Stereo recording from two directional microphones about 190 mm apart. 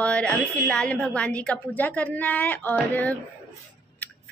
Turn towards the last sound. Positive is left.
turn(degrees=10)  # may be behind; listen again after turning